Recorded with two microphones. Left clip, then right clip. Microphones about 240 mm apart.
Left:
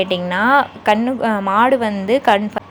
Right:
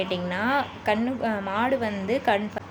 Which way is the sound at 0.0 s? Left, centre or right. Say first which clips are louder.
Left 10 dB; left.